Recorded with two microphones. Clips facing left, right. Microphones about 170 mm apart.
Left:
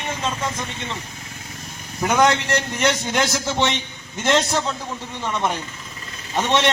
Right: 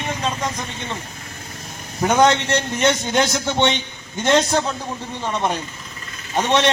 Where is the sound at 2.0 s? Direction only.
20° right (ahead or behind).